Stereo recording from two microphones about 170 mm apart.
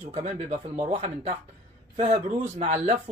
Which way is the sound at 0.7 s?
30° right (ahead or behind).